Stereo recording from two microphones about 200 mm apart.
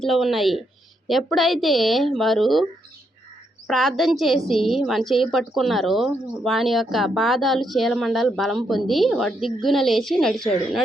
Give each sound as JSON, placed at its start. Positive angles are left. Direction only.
{"t": 0.0, "sound": "speech", "side_deg": 0}
{"t": 3.7, "sound": "speech", "side_deg": 0}